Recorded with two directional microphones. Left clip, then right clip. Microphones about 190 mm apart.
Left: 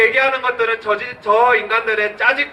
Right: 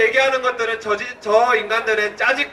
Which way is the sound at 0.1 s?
30° right (ahead or behind).